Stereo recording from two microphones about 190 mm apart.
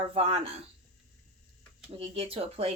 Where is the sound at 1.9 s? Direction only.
30° right (ahead or behind).